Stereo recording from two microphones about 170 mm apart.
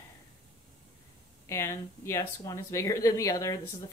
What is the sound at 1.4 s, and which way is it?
Speech, 15° left (ahead or behind).